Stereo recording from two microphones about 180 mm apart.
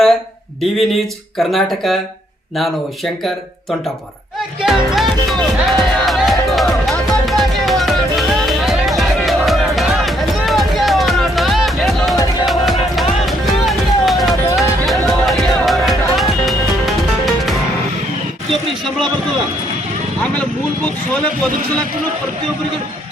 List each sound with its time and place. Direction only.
0.8 s speech: centre (ahead or behind)
4.6 s music: centre (ahead or behind)